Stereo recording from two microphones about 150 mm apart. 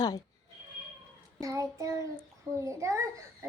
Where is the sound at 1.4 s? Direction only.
20° right (ahead or behind).